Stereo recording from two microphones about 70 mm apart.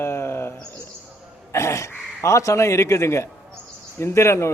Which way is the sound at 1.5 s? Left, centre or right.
Left.